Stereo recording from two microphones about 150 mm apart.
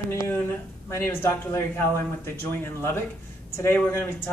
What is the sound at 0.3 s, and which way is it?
Speech, 15° left (ahead or behind).